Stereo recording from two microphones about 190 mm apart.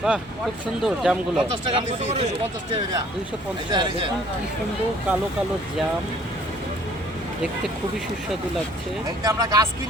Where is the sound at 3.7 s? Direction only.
25° right (ahead or behind).